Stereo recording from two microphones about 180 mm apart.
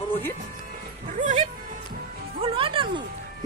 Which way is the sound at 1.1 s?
45° right (ahead or behind).